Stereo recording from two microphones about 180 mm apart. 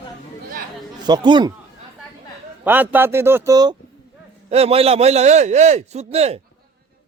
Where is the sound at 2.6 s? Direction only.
10° right (ahead or behind).